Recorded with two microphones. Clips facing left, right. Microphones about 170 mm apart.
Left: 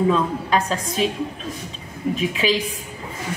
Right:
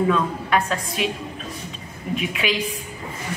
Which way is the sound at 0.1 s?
30° left (ahead or behind).